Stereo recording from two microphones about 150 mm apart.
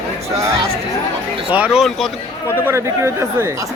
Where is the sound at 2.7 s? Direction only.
20° right (ahead or behind).